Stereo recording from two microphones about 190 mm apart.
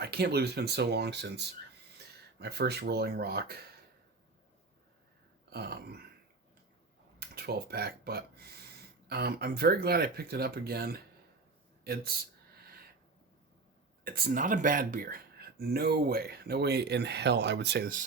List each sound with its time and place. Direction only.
0.0 s speech: 55° right (ahead or behind)
5.5 s speech: 55° right (ahead or behind)
7.2 s speech: 55° right (ahead or behind)
14.0 s speech: 50° right (ahead or behind)